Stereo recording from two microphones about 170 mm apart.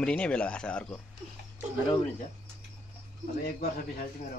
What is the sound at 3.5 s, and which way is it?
Speech, 65° left (ahead or behind).